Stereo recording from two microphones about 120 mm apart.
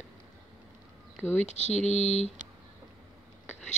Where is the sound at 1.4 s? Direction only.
70° left (ahead or behind).